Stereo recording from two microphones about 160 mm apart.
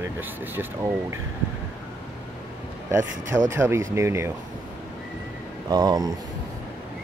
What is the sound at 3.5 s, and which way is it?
Speech, 15° right (ahead or behind).